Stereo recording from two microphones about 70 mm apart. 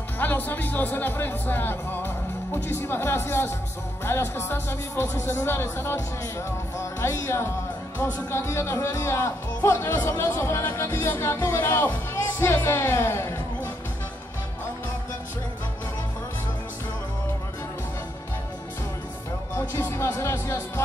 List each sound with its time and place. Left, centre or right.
0.2 s speech: left
19.7 s speech: left